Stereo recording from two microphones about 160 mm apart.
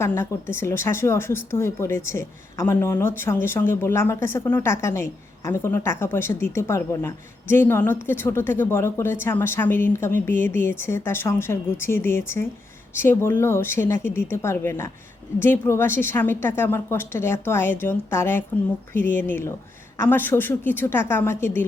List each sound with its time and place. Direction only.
0.0 s speech: 15° left (ahead or behind)